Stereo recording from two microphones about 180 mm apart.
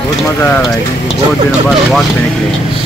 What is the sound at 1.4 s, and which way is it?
Speech, centre (ahead or behind).